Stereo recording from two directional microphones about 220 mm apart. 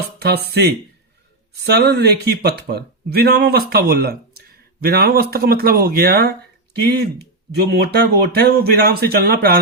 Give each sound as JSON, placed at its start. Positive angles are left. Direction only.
{"t": 0.2, "sound": "speech", "side_deg": -45}